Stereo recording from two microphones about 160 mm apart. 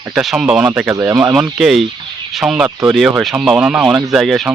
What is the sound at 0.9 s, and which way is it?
Speech, 20° right (ahead or behind).